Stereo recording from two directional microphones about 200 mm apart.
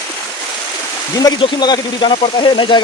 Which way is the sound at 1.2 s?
20° left (ahead or behind).